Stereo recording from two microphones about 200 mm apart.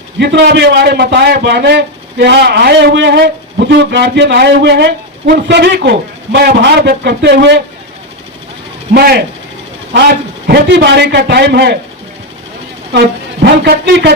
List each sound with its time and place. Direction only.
0.2 s a man's voice: 55° right (ahead or behind)
8.9 s speech: 50° right (ahead or behind)
10.4 s a man's voice: 55° right (ahead or behind)
13.4 s a man's voice: 60° right (ahead or behind)